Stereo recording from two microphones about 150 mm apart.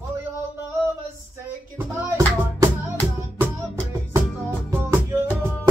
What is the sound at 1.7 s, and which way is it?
Music, 20° right (ahead or behind).